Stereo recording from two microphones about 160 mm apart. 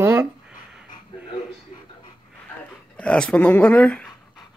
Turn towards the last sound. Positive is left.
turn(degrees=5)  # may be behind; listen again after turning